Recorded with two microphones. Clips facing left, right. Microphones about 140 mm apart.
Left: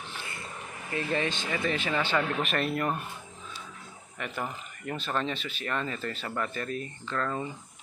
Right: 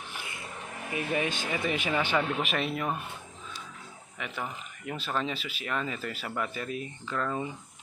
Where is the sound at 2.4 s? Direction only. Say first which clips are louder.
Left 2 dB; centre (ahead or behind).